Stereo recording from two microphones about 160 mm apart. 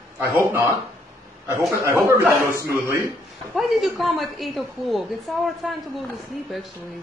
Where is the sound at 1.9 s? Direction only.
15° right (ahead or behind).